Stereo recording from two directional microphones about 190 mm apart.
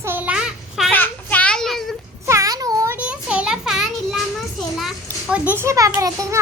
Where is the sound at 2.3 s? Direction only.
15° right (ahead or behind).